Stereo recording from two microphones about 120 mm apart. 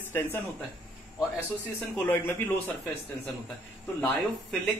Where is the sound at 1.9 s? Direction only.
15° left (ahead or behind).